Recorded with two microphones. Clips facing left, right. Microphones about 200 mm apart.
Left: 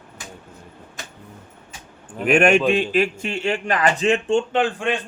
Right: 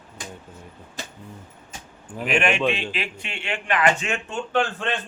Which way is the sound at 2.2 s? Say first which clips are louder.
Left 6 dB; 50° left (ahead or behind).